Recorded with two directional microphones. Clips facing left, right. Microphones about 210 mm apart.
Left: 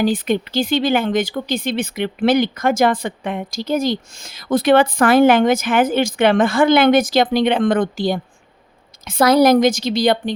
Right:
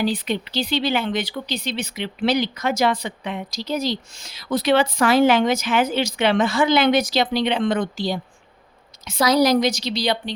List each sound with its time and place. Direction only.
0.0 s speech: 50° left (ahead or behind)